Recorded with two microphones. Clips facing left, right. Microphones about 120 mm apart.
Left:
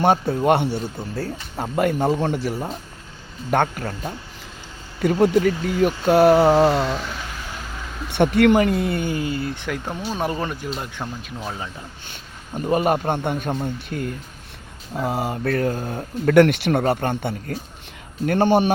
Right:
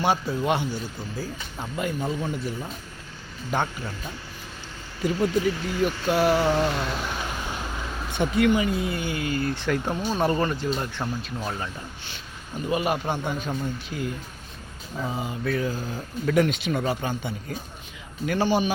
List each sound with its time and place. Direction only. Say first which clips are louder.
0.0 s speech: left 6 dB; 55° left (ahead or behind)
2.2 s speech: left 6 dB; 75° left (ahead or behind); by 6.7 s 40° left (ahead or behind)
8.1 s speech: left 6 dB; 65° left (ahead or behind); by 9.1 s 50° left (ahead or behind)
9.1 s speech: left 3 dB; 30° left (ahead or behind)
9.4 s speech: right 2 dB; 5° left (ahead or behind)
12.5 s speech: left 6 dB; 45° left (ahead or behind)
14.9 s speech: left 6 dB; 65° left (ahead or behind)